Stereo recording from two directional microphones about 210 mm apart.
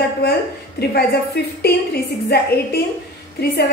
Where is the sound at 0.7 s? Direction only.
50° left (ahead or behind).